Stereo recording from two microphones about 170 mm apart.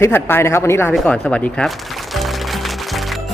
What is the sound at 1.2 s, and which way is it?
Music, 5° left (ahead or behind).